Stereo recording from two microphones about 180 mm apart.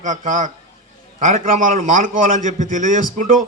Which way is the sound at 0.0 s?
45° right (ahead or behind).